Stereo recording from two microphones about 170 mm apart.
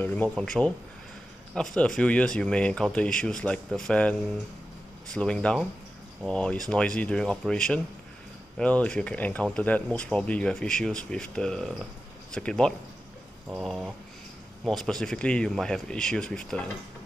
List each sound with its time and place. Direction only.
0.0 s speech: 10° left (ahead or behind)